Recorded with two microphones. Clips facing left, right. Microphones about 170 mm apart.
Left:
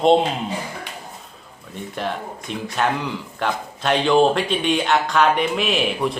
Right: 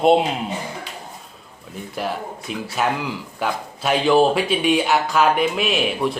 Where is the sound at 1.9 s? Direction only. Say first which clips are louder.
Right 1 dB; 5° right (ahead or behind).